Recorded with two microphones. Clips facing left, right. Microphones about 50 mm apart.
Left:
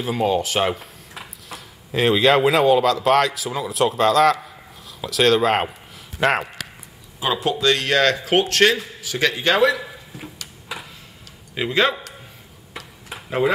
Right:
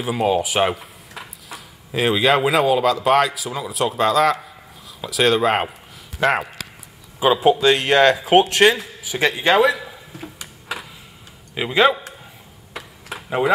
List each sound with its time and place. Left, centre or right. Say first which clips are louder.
0.0 s speech: right 1 dB; centre
7.2 s speech: right 6 dB; centre
11.5 s speech: right 3 dB; centre